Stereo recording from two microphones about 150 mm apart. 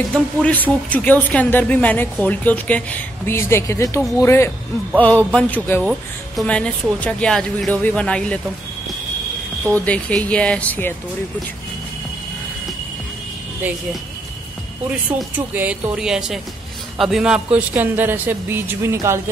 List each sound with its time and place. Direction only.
0.1 s a woman's voice: 10° left (ahead or behind)
4.9 s a woman's voice: 5° left (ahead or behind)
9.7 s a woman's voice: 10° left (ahead or behind)
14.9 s speech: 10° right (ahead or behind)